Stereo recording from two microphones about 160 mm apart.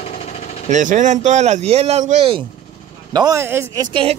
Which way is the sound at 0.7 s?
50° right (ahead or behind).